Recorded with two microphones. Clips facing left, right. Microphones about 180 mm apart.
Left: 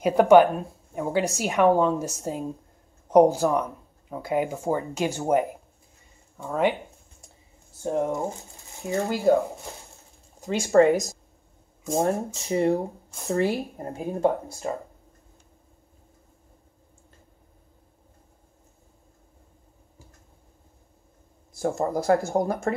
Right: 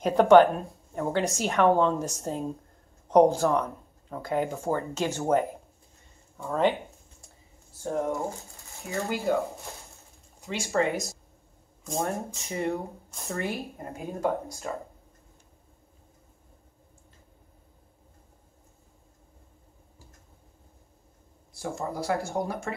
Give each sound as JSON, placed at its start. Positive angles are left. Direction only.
{"t": 0.0, "sound": "a woman's voice", "side_deg": 10}
{"t": 6.4, "sound": "speech", "side_deg": 10}
{"t": 7.8, "sound": "speech", "side_deg": 20}
{"t": 9.1, "sound": "speech", "side_deg": 35}
{"t": 10.4, "sound": "speech", "side_deg": 45}
{"t": 12.4, "sound": "speech", "side_deg": 35}
{"t": 21.5, "sound": "speech", "side_deg": 45}